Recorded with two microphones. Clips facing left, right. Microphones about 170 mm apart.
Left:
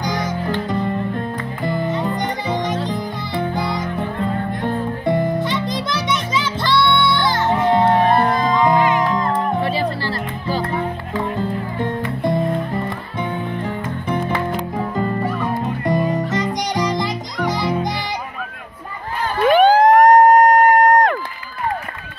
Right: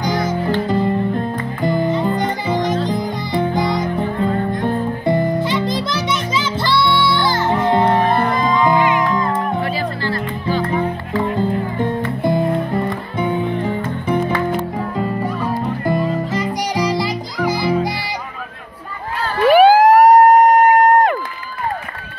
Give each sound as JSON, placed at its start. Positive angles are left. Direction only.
{"t": 0.0, "sound": "music", "side_deg": -5}
{"t": 1.6, "sound": "music", "side_deg": -15}
{"t": 1.9, "sound": "music", "side_deg": -5}
{"t": 4.2, "sound": "music", "side_deg": 0}
{"t": 9.7, "sound": "music", "side_deg": 30}
{"t": 11.8, "sound": "music", "side_deg": 0}
{"t": 15.8, "sound": "music", "side_deg": -25}
{"t": 16.1, "sound": "music", "side_deg": -10}
{"t": 19.4, "sound": "emergency vehicle", "side_deg": -5}